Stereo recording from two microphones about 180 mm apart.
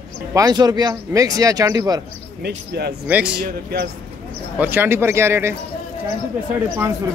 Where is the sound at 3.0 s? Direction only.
5° right (ahead or behind).